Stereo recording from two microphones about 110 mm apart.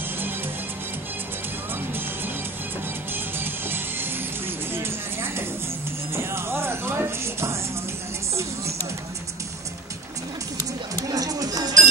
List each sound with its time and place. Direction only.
3.3 s music: 20° right (ahead or behind)
4.7 s vehicle: 20° right (ahead or behind)
6.1 s music: 20° right (ahead or behind)
11.0 s music: 35° right (ahead or behind)